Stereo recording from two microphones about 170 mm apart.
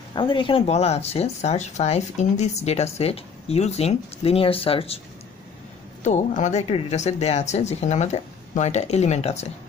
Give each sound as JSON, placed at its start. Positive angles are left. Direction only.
{"t": 0.1, "sound": "speech", "side_deg": 30}
{"t": 6.0, "sound": "speech", "side_deg": 45}